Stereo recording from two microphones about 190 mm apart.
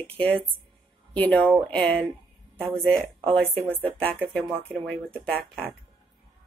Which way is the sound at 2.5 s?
15° right (ahead or behind).